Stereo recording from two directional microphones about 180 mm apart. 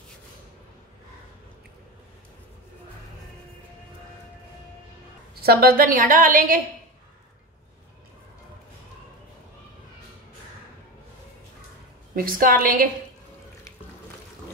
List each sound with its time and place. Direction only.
5.3 s a woman's voice: 60° right (ahead or behind)
12.2 s a woman's voice: 50° right (ahead or behind)